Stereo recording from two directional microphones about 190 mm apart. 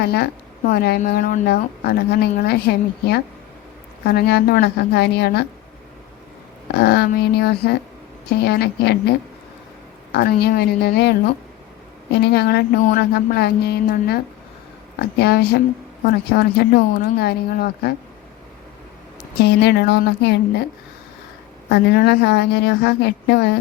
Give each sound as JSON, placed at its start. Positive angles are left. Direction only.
{"t": 0.0, "sound": "a woman's voice", "side_deg": 60}
{"t": 6.7, "sound": "a woman's voice", "side_deg": 60}
{"t": 12.2, "sound": "a woman's voice", "side_deg": 60}
{"t": 15.2, "sound": "a woman's voice", "side_deg": 60}
{"t": 19.4, "sound": "a woman's voice", "side_deg": 60}
{"t": 21.7, "sound": "a woman's voice", "side_deg": 60}